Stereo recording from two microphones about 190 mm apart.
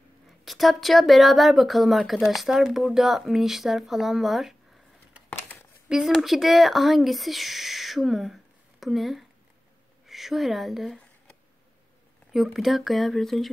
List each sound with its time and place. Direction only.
0.5 s speech: centre (ahead or behind)
5.9 s speech: centre (ahead or behind)
12.3 s speech: centre (ahead or behind)